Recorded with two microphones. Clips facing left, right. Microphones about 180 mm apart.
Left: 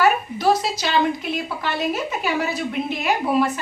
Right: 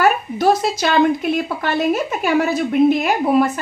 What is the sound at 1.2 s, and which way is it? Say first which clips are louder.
A woman's voice: right 6 dB; 50° right (ahead or behind).